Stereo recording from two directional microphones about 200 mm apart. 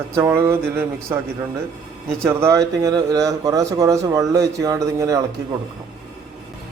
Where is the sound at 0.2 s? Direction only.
15° right (ahead or behind).